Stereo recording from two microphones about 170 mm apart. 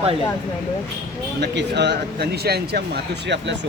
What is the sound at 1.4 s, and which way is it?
Speech, 90° right.